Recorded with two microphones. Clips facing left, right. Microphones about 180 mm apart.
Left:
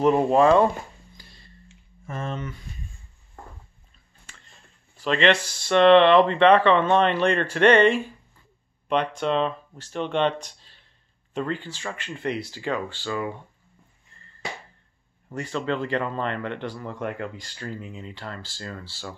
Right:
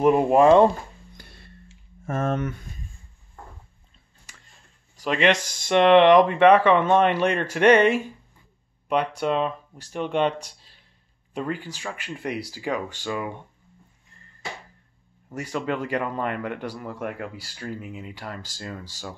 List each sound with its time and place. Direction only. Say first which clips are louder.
0.0 s speech: right 1 dB; 10° right (ahead or behind)
1.1 s music: right 4 dB; 60° right (ahead or behind)
2.0 s speech: right 7 dB; 45° right (ahead or behind)
2.3 s speech: right 6 dB; 65° right (ahead or behind)
4.9 s speech: left 1 dB; 15° right (ahead or behind)
15.3 s speech: even; 10° right (ahead or behind)